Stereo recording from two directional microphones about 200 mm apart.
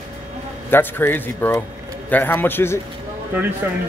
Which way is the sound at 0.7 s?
10° left (ahead or behind).